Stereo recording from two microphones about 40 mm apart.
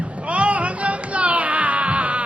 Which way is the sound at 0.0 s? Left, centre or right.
Right.